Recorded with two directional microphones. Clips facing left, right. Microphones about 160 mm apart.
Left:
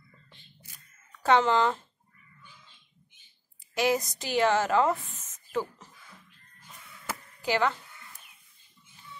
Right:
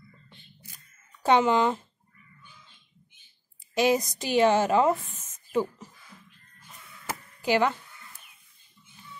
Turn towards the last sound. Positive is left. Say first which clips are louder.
# right 3 dB
turn(degrees=-15)  # may be behind; listen again after turning